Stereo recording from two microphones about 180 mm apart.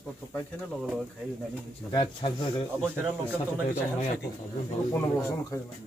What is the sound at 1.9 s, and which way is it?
Speech, 30° left (ahead or behind).